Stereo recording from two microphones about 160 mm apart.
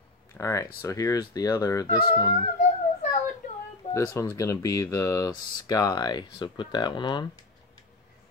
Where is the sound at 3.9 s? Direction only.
20° left (ahead or behind).